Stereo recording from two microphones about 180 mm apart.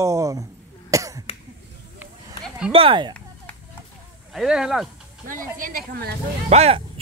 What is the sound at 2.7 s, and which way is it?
Speech, 30° right (ahead or behind).